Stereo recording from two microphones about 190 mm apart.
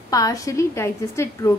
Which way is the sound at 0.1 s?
20° left (ahead or behind).